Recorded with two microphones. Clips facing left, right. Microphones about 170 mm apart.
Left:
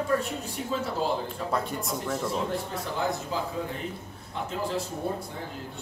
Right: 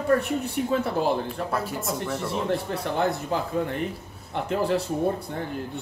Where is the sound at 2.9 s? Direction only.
60° right (ahead or behind).